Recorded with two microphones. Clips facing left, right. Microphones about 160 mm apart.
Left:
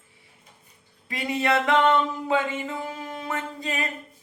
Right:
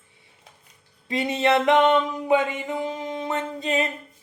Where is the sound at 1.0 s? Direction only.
25° right (ahead or behind).